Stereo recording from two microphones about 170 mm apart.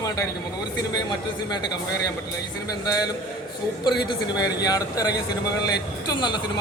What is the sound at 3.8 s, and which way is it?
A man's voice, 25° left (ahead or behind).